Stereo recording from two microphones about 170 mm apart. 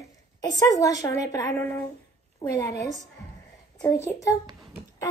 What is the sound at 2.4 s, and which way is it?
Speech, 20° left (ahead or behind).